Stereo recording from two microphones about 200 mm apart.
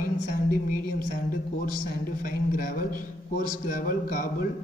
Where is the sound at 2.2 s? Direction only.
45° left (ahead or behind).